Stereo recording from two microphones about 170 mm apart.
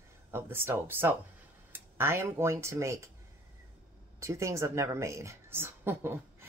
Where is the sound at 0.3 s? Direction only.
15° right (ahead or behind).